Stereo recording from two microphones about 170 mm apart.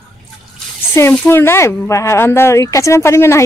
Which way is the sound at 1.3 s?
15° left (ahead or behind).